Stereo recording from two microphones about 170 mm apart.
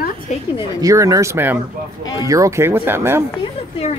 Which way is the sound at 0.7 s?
20° right (ahead or behind).